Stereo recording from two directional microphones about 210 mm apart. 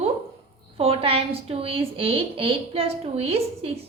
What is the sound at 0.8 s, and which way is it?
A woman's voice, 25° right (ahead or behind).